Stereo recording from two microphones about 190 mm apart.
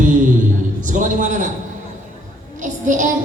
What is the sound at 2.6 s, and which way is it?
Speech, 40° right (ahead or behind).